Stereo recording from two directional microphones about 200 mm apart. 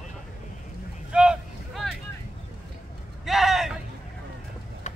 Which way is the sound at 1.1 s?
5° right (ahead or behind).